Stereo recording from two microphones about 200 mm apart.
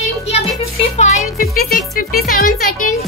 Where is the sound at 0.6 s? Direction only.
35° left (ahead or behind).